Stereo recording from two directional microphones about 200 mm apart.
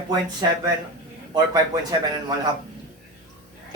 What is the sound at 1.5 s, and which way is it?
Speech, 20° right (ahead or behind).